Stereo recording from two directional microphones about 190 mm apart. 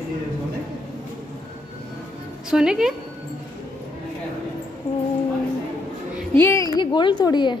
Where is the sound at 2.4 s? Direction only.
5° right (ahead or behind).